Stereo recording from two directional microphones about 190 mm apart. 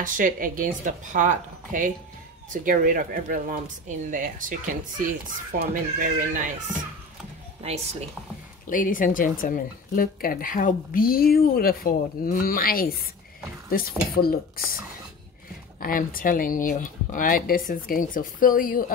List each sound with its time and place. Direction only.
0.0 s speech: 45° right (ahead or behind)
8.6 s speech: 45° left (ahead or behind)
15.8 s speech: 50° left (ahead or behind)